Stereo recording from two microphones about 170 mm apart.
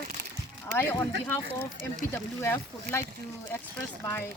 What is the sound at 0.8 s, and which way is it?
Speech, 15° left (ahead or behind).